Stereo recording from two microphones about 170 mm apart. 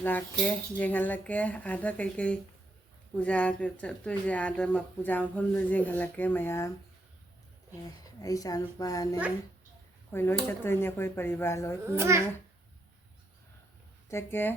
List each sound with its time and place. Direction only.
0.0 s speech: 10° left (ahead or behind)
8.2 s speech: 20° left (ahead or behind)
10.1 s speech: 15° left (ahead or behind)
11.9 s a child's voice: 15° right (ahead or behind)
14.1 s speech: 15° left (ahead or behind)